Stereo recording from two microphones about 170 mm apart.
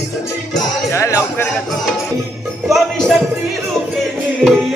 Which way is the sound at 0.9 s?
15° left (ahead or behind).